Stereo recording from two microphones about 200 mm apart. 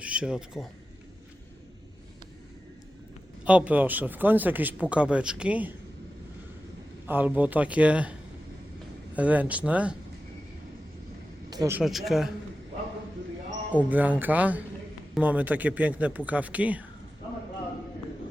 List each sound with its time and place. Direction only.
0.0 s a man's voice: 5° right (ahead or behind)
3.4 s speech: 5° right (ahead or behind)
7.1 s speech: 10° right (ahead or behind)
9.1 s speech: 5° right (ahead or behind)
11.5 s speech: 15° right (ahead or behind)
11.8 s speech: centre (ahead or behind)
13.7 s speech: 10° right (ahead or behind)